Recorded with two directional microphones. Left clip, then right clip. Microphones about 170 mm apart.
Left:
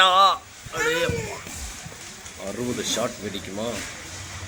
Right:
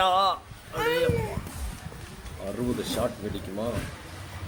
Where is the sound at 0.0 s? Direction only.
Centre (ahead or behind).